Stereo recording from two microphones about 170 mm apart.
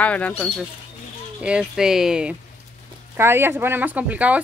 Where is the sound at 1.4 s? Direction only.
5° right (ahead or behind).